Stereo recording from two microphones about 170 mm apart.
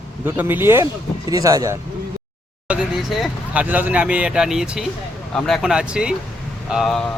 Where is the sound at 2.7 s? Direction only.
5° right (ahead or behind).